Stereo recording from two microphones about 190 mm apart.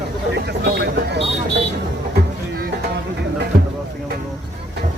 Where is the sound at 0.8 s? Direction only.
60° right (ahead or behind).